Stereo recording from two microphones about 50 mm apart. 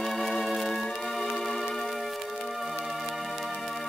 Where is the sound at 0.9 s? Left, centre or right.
Centre.